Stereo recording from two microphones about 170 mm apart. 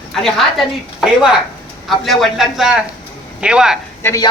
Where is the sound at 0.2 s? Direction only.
Centre (ahead or behind).